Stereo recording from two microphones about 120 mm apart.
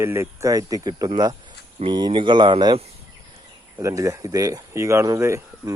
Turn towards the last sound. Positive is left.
turn(degrees=-25)  # may be behind; listen again after turning